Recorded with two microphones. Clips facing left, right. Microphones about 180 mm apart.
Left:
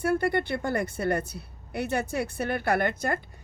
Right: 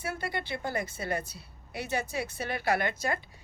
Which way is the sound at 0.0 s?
60° left (ahead or behind).